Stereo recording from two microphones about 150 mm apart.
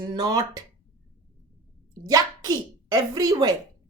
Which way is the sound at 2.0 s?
25° right (ahead or behind).